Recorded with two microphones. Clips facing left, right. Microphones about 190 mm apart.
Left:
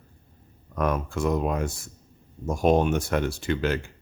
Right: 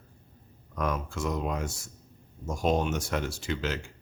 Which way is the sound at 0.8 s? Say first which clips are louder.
Left 5 dB; 55° left (ahead or behind).